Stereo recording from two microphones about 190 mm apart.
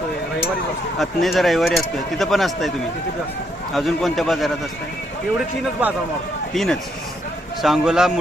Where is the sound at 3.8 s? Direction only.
Centre (ahead or behind).